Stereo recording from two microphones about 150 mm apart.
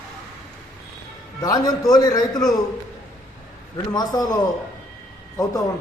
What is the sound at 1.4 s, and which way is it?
Speech, 25° left (ahead or behind).